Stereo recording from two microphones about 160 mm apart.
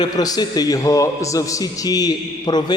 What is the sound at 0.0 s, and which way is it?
A man's voice, 25° left (ahead or behind).